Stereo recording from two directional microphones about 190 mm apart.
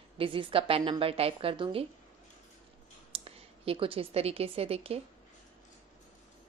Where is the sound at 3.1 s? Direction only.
30° right (ahead or behind).